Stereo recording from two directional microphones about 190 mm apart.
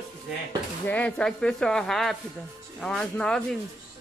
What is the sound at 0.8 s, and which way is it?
Speech, 10° left (ahead or behind).